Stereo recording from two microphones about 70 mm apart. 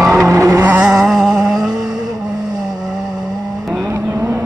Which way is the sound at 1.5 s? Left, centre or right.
Right.